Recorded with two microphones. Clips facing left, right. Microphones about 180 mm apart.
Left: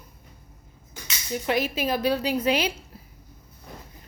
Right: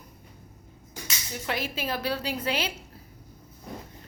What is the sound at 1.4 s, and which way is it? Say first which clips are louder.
A woman's voice: left 6 dB; 15° left (ahead or behind).